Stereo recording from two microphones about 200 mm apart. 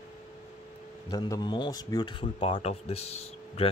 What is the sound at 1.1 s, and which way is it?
Speech, 20° left (ahead or behind).